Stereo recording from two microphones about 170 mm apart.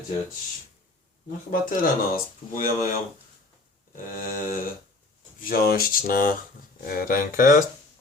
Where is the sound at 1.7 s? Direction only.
55° left (ahead or behind).